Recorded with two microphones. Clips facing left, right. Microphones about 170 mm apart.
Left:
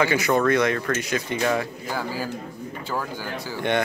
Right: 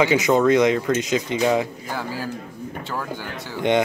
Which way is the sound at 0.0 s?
20° right (ahead or behind).